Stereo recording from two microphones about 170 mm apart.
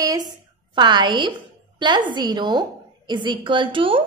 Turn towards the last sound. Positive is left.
turn(degrees=-30)  # may be behind; listen again after turning